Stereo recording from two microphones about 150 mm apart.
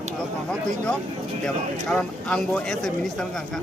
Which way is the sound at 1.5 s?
5° left (ahead or behind).